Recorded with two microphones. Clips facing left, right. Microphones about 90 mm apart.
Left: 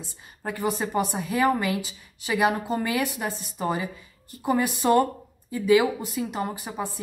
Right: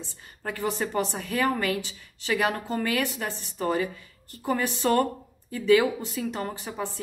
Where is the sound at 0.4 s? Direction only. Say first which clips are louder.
Left 2 dB; 15° left (ahead or behind).